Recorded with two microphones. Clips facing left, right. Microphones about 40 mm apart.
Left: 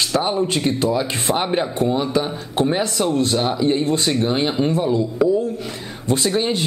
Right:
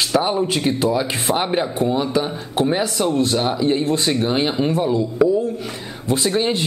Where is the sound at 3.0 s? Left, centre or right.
Centre.